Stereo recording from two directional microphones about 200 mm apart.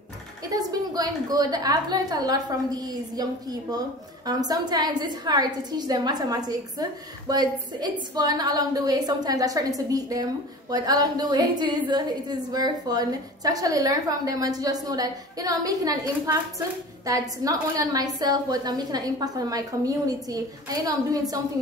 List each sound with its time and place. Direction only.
0.4 s a woman's voice: 20° right (ahead or behind)